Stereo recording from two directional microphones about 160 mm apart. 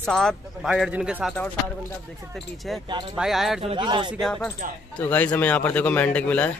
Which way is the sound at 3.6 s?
30° right (ahead or behind).